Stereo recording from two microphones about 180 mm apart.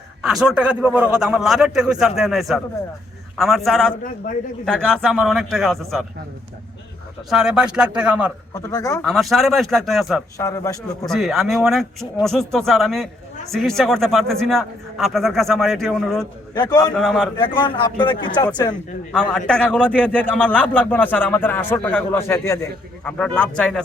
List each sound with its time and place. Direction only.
0.2 s a man's voice: centre (ahead or behind)
7.3 s a man's voice: 5° right (ahead or behind)
8.5 s a man's voice: 20° left (ahead or behind)
9.0 s a man's voice: centre (ahead or behind)
10.3 s a man's voice: 20° left (ahead or behind)
11.0 s a man's voice: centre (ahead or behind)
16.6 s a man's voice: 15° left (ahead or behind)
16.9 s a man's voice: 5° left (ahead or behind)
17.3 s speech: 25° left (ahead or behind)
19.1 s a man's voice: 5° left (ahead or behind)